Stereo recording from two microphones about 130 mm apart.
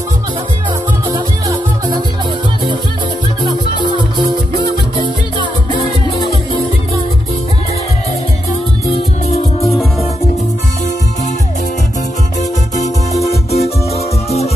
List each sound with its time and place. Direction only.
12.4 s music: 65° left (ahead or behind)